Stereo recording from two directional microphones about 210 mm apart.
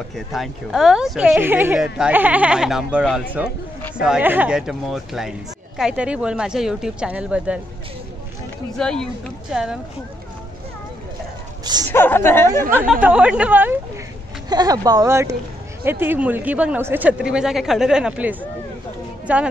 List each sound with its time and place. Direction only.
0.1 s speech: centre (ahead or behind)
8.7 s speech: centre (ahead or behind)
11.9 s a woman's voice: 10° left (ahead or behind)
12.7 s speech: 5° right (ahead or behind)